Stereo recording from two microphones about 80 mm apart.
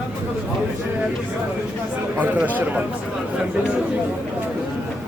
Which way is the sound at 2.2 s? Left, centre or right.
Right.